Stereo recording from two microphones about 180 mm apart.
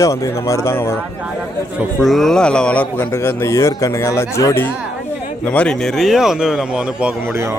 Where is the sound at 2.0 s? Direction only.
Centre (ahead or behind).